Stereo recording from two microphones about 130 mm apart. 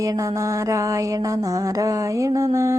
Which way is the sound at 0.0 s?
25° right (ahead or behind).